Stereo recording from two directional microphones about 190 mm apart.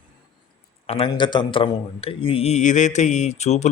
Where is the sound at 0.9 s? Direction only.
30° left (ahead or behind).